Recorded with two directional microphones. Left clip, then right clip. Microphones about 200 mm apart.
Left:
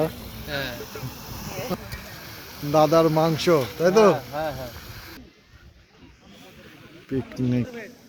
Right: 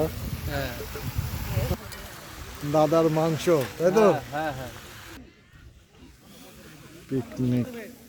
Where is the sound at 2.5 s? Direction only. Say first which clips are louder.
Left 1 dB; 35° left (ahead or behind).